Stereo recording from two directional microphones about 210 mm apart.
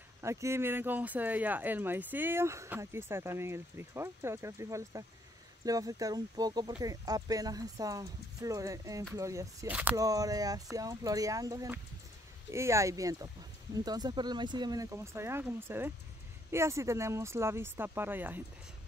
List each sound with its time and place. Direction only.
0.2 s speech: 15° right (ahead or behind)